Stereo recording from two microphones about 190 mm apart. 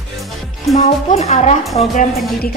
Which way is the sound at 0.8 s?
35° left (ahead or behind).